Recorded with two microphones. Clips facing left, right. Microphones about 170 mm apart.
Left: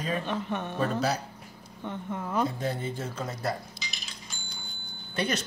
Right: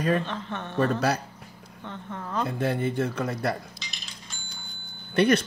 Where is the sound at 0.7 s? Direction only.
60° right (ahead or behind).